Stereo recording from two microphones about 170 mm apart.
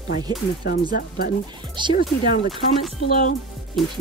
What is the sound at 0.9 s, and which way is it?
Speech, 60° left (ahead or behind).